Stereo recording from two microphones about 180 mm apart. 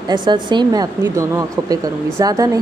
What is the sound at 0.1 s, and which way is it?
Speech, 25° right (ahead or behind).